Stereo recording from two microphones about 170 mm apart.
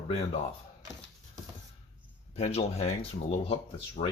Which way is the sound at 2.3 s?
35° left (ahead or behind).